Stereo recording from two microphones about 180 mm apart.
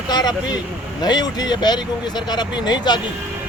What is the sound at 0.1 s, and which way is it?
Speech, 20° left (ahead or behind).